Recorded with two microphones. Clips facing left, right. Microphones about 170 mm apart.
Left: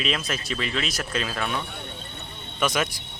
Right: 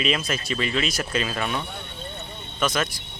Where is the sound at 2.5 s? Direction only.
10° left (ahead or behind).